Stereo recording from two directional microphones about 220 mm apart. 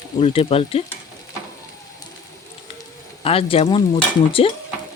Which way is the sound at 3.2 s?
25° left (ahead or behind).